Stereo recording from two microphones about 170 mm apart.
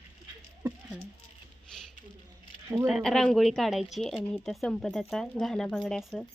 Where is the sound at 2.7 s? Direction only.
5° right (ahead or behind).